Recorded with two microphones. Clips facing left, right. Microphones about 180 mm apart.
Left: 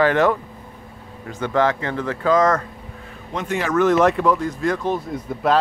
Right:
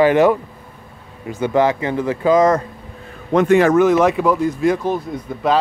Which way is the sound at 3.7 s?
10° right (ahead or behind).